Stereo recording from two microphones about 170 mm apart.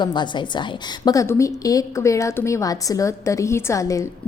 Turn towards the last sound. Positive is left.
turn(degrees=20)  # may be behind; listen again after turning